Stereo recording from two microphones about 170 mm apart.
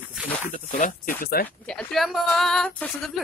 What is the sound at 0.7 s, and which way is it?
Speech, 50° left (ahead or behind).